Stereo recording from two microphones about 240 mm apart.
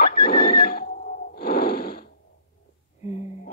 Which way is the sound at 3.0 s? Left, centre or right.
Left.